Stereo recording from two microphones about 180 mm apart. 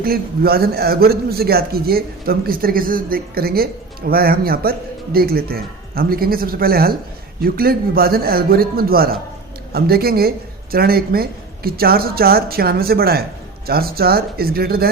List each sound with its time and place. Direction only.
0.0 s a man's voice: 55° right (ahead or behind)